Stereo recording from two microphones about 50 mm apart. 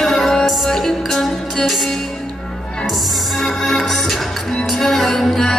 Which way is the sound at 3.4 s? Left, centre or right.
Centre.